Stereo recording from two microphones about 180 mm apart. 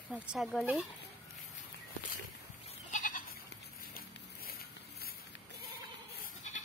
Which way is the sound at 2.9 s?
45° left (ahead or behind).